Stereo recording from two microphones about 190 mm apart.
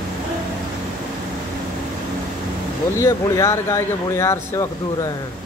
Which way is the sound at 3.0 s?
15° left (ahead or behind).